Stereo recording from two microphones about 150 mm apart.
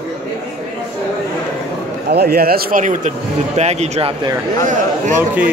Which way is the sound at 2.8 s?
55° right (ahead or behind).